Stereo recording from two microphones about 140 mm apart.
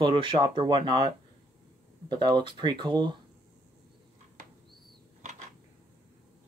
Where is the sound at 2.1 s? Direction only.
35° right (ahead or behind).